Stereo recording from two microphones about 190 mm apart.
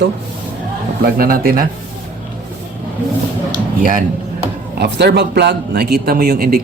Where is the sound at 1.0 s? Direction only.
50° right (ahead or behind).